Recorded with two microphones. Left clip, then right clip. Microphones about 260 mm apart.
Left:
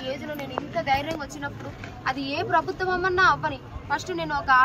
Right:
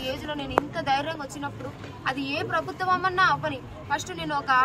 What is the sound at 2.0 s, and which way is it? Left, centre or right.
Speech, centre.